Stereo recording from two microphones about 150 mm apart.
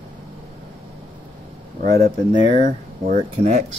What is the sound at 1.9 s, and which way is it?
Speech, 55° right (ahead or behind).